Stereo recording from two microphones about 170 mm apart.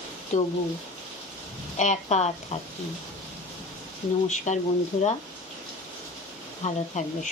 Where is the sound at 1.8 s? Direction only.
40° left (ahead or behind).